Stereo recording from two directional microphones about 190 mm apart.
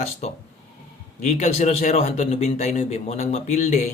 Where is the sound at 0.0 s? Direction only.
35° left (ahead or behind).